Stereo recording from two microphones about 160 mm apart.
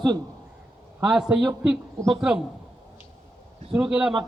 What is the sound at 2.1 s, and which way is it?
Speech, 5° right (ahead or behind).